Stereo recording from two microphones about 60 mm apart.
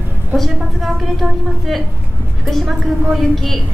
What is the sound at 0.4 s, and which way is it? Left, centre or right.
Speech, centre.